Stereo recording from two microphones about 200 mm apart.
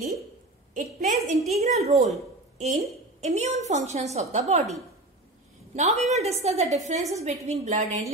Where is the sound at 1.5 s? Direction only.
35° right (ahead or behind).